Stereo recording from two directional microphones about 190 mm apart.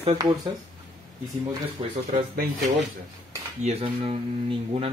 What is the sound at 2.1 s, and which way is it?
Speech, 40° right (ahead or behind).